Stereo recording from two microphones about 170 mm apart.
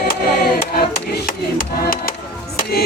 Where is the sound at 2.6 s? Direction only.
65° left (ahead or behind).